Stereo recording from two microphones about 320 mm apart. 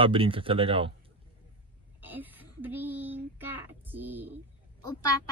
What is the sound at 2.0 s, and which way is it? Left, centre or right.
Speech, centre.